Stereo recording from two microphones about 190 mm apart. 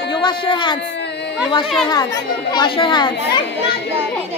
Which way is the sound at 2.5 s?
25° left (ahead or behind).